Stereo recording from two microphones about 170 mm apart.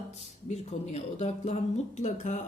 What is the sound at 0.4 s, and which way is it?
Speech, 40° left (ahead or behind).